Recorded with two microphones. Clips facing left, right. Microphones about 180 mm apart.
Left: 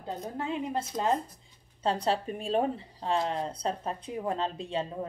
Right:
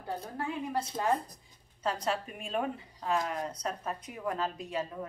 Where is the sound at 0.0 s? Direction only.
20° left (ahead or behind).